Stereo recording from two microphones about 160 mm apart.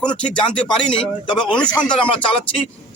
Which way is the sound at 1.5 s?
5° left (ahead or behind).